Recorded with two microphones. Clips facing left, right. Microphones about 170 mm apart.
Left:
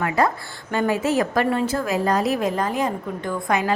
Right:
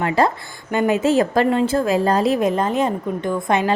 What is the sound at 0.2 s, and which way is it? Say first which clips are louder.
A woman's voice: right 2 dB; 25° right (ahead or behind).